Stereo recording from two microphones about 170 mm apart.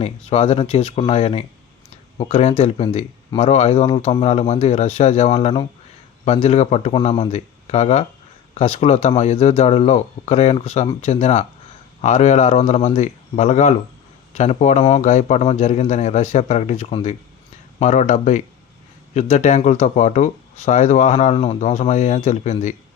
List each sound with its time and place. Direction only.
0.0 s speech: 35° left (ahead or behind)